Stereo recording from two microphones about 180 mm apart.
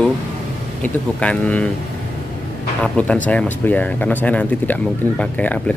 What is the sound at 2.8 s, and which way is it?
Speech, 5° left (ahead or behind).